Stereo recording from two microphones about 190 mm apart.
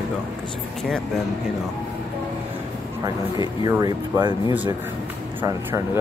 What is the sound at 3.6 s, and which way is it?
Speech, 20° right (ahead or behind).